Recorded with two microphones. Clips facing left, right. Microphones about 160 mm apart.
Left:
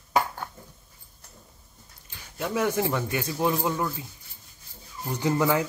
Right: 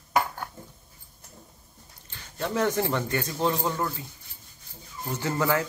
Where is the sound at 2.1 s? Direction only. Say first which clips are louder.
Even; 10° left (ahead or behind).